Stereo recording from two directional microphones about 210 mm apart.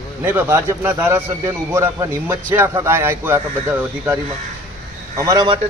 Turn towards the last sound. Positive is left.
turn(degrees=-20)  # may be behind; listen again after turning